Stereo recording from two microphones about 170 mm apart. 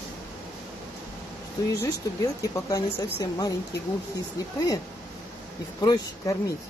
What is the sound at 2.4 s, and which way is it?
Speech, 20° left (ahead or behind).